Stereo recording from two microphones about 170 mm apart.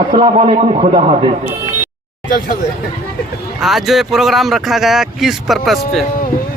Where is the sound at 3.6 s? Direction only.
Centre (ahead or behind).